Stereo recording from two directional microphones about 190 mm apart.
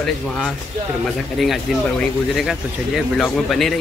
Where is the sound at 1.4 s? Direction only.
Centre (ahead or behind).